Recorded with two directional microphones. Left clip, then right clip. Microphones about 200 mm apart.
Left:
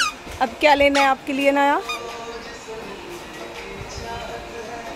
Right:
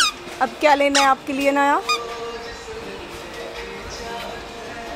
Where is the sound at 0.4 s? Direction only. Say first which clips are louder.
Left 1 dB; 10° left (ahead or behind).